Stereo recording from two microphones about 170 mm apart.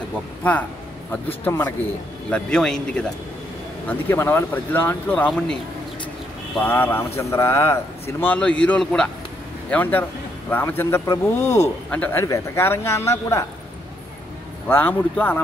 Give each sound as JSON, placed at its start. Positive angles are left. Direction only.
{"t": 0.4, "sound": "a man's voice", "side_deg": 10}
{"t": 6.6, "sound": "a man's voice", "side_deg": 10}
{"t": 14.7, "sound": "a man's voice", "side_deg": 10}